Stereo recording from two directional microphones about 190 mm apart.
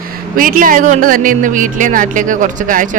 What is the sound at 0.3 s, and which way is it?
A woman's voice, 45° right (ahead or behind).